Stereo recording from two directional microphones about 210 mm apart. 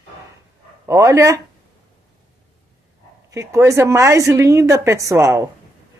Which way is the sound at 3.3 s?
15° right (ahead or behind).